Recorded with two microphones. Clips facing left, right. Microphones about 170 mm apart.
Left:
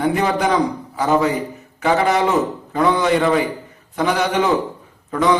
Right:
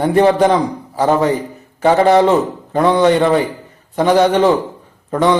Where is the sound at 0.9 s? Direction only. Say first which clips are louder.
Right 4 dB; 30° right (ahead or behind).